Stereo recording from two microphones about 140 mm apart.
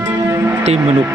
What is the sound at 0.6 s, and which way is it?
Speech, 50° right (ahead or behind).